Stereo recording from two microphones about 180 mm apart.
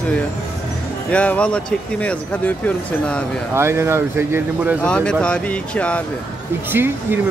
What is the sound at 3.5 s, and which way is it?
Speech, 15° right (ahead or behind).